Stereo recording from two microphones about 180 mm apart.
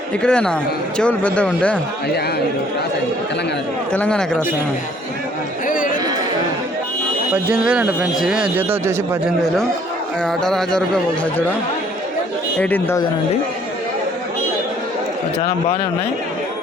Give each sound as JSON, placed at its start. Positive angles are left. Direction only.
{"t": 0.2, "sound": "speech", "side_deg": 5}
{"t": 3.9, "sound": "speech", "side_deg": 5}
{"t": 5.6, "sound": "a sound", "side_deg": 50}
{"t": 7.5, "sound": "speech", "side_deg": -5}
{"t": 10.2, "sound": "speech", "side_deg": 5}
{"t": 12.5, "sound": "speech", "side_deg": 10}